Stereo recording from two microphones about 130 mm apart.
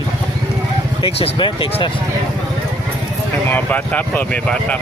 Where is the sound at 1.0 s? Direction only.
45° left (ahead or behind).